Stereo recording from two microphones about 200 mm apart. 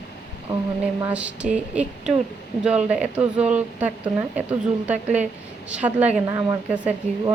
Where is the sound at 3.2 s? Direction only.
5° right (ahead or behind).